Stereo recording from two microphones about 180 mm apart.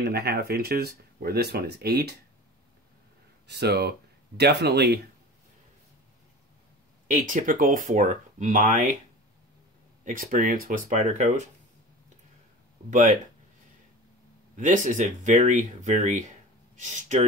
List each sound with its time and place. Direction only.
0.0 s speech: 65° right (ahead or behind)
3.4 s speech: 65° right (ahead or behind)
7.2 s speech: 50° right (ahead or behind)
10.0 s speech: 50° right (ahead or behind)
14.6 s speech: 45° right (ahead or behind)